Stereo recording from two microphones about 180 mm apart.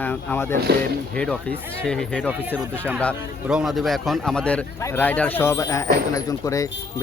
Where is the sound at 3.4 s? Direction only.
5° right (ahead or behind).